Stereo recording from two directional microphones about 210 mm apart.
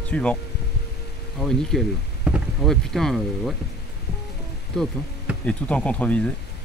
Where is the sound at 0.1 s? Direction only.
5° left (ahead or behind).